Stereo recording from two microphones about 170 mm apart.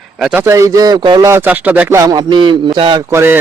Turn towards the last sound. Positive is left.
turn(degrees=-15)  # may be behind; listen again after turning